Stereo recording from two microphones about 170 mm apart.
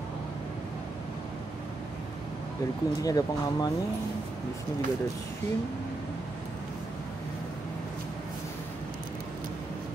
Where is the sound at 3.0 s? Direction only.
20° left (ahead or behind).